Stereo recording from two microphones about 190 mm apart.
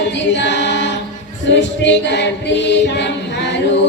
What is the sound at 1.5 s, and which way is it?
A capella, 70° left (ahead or behind).